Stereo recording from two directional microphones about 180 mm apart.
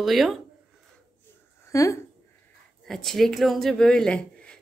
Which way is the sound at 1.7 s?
15° left (ahead or behind).